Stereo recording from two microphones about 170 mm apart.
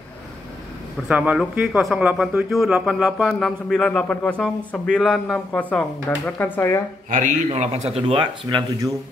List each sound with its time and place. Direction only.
1.0 s speech: 5° right (ahead or behind); by 6.8 s 10° left (ahead or behind)
7.1 s a man's voice: 45° right (ahead or behind)
8.1 s speech: 30° right (ahead or behind)